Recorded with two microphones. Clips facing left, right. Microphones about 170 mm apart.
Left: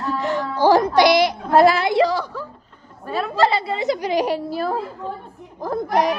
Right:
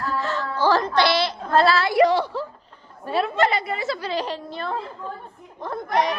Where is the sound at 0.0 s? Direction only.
15° left (ahead or behind).